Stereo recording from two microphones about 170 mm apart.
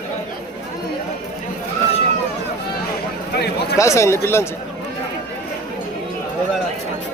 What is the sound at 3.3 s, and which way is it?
Speech, 70° left (ahead or behind).